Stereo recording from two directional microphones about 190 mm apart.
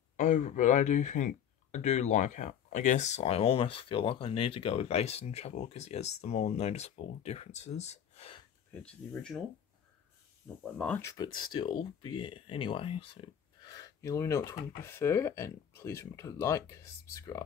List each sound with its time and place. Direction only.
0.2 s speech: 40° left (ahead or behind)
8.8 s speech: 5° left (ahead or behind)
10.6 s speech: 5° left (ahead or behind)